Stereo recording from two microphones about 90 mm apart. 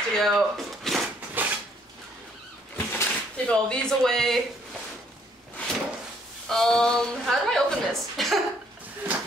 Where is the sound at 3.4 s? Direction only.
10° left (ahead or behind).